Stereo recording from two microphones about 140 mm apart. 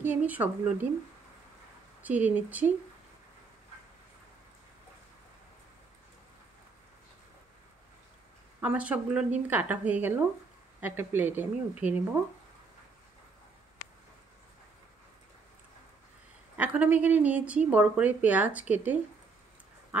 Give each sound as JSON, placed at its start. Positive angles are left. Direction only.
{"t": 0.0, "sound": "speech", "side_deg": -10}
{"t": 2.0, "sound": "speech", "side_deg": -10}
{"t": 8.5, "sound": "speech", "side_deg": -10}
{"t": 16.5, "sound": "speech", "side_deg": -10}
{"t": 19.9, "sound": "dog", "side_deg": -10}